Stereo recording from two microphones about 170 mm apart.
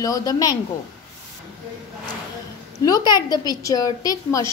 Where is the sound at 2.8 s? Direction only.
20° left (ahead or behind).